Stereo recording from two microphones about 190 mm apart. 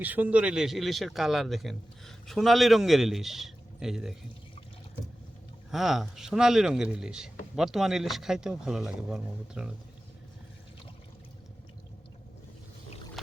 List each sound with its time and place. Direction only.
0.0 s a man's voice: 10° right (ahead or behind)
5.7 s a man's voice: centre (ahead or behind)
13.2 s pour: centre (ahead or behind)